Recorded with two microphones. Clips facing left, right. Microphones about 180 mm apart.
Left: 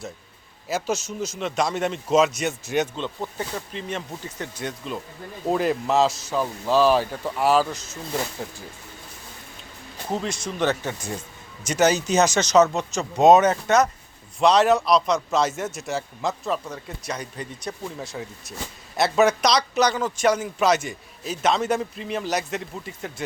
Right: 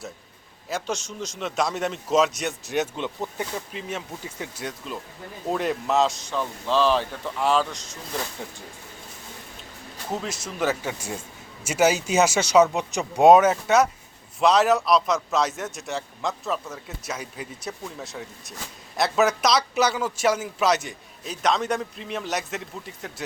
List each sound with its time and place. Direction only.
0.7 s a man's voice: 5° left (ahead or behind)
2.9 s a man's voice: 15° right (ahead or behind)
10.1 s a man's voice: 5° right (ahead or behind)